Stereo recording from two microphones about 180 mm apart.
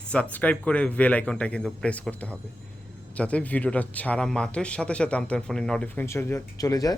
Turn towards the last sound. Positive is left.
turn(degrees=20)  # may be behind; listen again after turning